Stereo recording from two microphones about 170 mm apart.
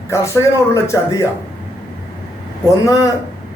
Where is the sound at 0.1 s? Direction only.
20° left (ahead or behind).